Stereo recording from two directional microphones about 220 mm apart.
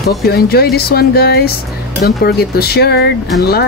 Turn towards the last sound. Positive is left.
turn(degrees=45)  # may be behind; listen again after turning